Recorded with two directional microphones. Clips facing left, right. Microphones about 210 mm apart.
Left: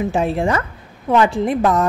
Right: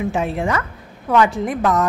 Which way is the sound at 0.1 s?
30° left (ahead or behind).